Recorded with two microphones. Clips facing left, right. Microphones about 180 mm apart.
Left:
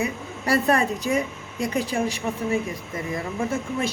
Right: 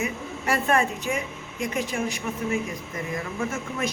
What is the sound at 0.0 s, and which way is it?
A woman's voice, 35° left (ahead or behind).